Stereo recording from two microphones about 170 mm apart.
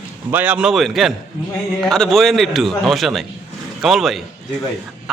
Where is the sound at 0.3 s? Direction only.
10° right (ahead or behind).